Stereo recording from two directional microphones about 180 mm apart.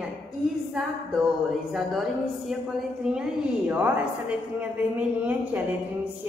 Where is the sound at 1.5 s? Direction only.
Centre (ahead or behind).